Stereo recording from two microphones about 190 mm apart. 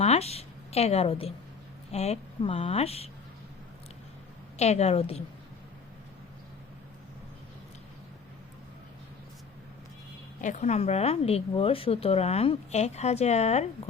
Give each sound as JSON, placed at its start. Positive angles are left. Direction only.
{"t": 0.0, "sound": "a woman's voice", "side_deg": 35}
{"t": 4.5, "sound": "a woman's voice", "side_deg": 35}
{"t": 10.4, "sound": "a woman's voice", "side_deg": 40}